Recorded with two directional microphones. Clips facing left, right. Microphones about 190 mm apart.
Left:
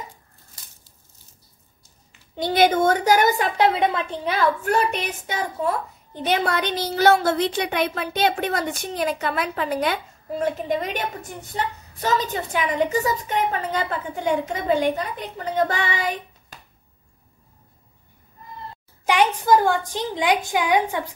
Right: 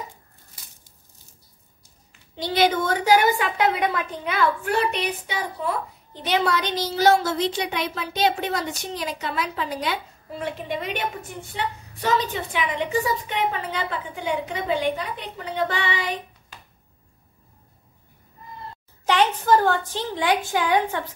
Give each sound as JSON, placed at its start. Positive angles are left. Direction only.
{"t": 2.3, "sound": "a woman's voice", "side_deg": 50}
{"t": 10.4, "sound": "a woman's voice", "side_deg": 40}
{"t": 19.0, "sound": "a woman's voice", "side_deg": 10}